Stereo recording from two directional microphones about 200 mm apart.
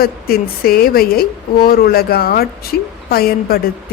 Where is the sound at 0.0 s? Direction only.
50° left (ahead or behind).